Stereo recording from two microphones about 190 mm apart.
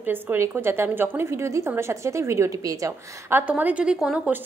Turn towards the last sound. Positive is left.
turn(degrees=-5)  # may be behind; listen again after turning